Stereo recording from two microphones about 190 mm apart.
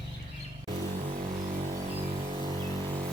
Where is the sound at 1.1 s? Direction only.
30° right (ahead or behind).